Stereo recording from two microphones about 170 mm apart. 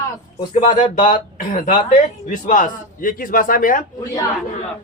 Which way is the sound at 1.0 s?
50° left (ahead or behind).